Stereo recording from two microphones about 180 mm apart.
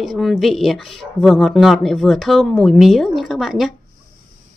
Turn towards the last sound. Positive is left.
turn(degrees=0)  # may be behind; listen again after turning